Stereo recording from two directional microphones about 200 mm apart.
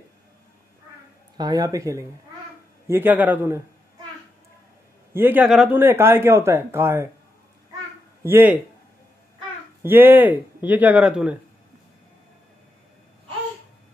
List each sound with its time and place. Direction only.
1.4 s a man's voice: 20° right (ahead or behind)
5.1 s a man's voice: 10° right (ahead or behind)
8.2 s speech: 10° right (ahead or behind)
9.8 s a man's voice: 10° right (ahead or behind)